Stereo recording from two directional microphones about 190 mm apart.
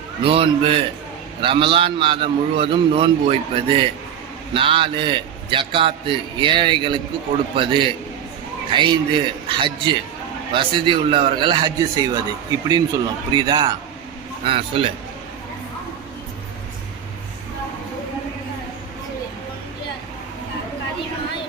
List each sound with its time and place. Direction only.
0.2 s a man's voice: 30° right (ahead or behind)